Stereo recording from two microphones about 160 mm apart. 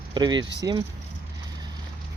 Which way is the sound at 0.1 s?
25° right (ahead or behind).